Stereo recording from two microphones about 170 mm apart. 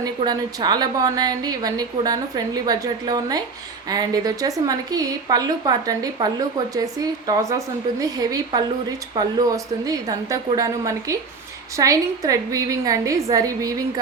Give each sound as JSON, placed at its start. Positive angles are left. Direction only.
{"t": 0.3, "sound": "a woman's voice", "side_deg": -25}